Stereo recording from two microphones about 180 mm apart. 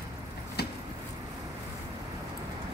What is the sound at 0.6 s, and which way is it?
Vehicle, 65° left (ahead or behind).